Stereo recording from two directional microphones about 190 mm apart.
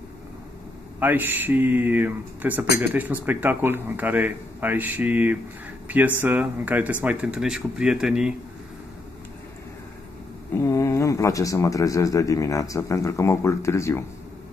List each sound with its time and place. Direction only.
0.9 s speech: 10° right (ahead or behind)
10.5 s speech: 15° left (ahead or behind)